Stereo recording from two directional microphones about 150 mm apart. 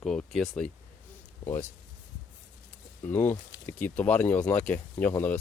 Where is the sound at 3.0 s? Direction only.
10° left (ahead or behind).